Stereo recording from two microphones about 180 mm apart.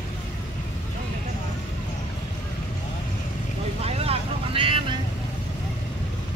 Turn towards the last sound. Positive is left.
turn(degrees=-30)  # may be behind; listen again after turning